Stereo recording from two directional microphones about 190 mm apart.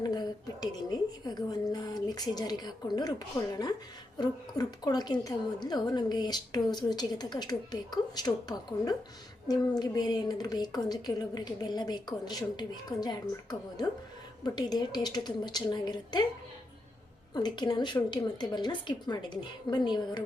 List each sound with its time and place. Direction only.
0.0 s a sound: 20° left (ahead or behind)
4.2 s a woman's voice: 20° left (ahead or behind)
17.3 s a woman's voice: 25° left (ahead or behind)